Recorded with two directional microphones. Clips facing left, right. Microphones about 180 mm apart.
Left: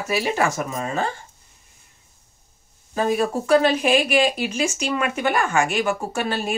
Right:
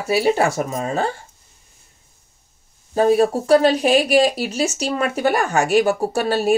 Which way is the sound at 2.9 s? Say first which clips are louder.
Right 6 dB; 35° right (ahead or behind).